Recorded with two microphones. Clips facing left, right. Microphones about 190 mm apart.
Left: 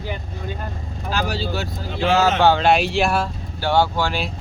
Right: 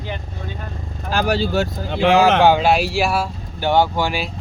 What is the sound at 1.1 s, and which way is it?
Speech, 55° right (ahead or behind).